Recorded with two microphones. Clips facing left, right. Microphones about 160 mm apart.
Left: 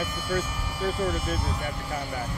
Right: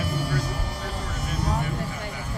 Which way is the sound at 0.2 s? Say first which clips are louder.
Even; 35° right (ahead or behind).